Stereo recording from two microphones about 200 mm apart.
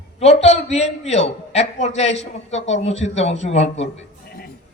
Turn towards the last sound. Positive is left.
turn(degrees=30)  # may be behind; listen again after turning